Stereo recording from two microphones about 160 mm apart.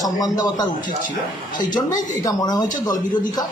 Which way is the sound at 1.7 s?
25° left (ahead or behind).